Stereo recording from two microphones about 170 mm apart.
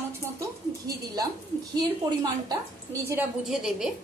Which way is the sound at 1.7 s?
25° right (ahead or behind).